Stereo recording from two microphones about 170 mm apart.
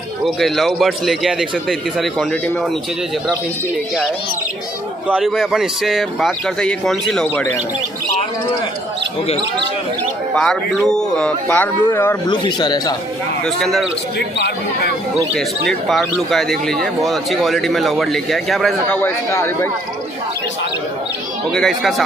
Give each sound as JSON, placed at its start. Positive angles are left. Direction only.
{"t": 0.2, "sound": "speech", "side_deg": 0}
{"t": 5.0, "sound": "speech", "side_deg": -5}
{"t": 10.3, "sound": "speech", "side_deg": 5}
{"t": 12.3, "sound": "speech", "side_deg": 25}
{"t": 13.6, "sound": "speech", "side_deg": 0}
{"t": 14.1, "sound": "speech", "side_deg": 70}
{"t": 15.7, "sound": "speech", "side_deg": 0}
{"t": 19.0, "sound": "speech", "side_deg": 15}
{"t": 21.5, "sound": "speech", "side_deg": 0}